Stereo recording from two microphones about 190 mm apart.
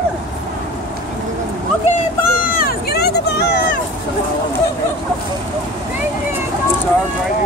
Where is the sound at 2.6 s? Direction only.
55° left (ahead or behind).